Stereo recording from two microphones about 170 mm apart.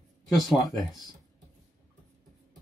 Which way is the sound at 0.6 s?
Centre (ahead or behind).